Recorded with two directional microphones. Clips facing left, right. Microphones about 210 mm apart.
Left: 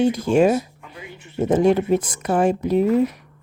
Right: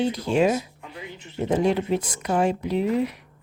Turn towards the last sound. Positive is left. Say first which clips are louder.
# left 6 dB
turn(degrees=45)  # may be behind; listen again after turning